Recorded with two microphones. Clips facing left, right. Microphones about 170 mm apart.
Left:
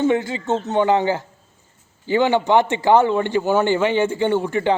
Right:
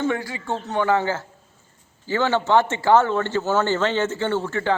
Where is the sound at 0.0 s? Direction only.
20° left (ahead or behind).